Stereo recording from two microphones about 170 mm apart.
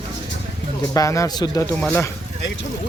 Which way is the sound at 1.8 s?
10° left (ahead or behind).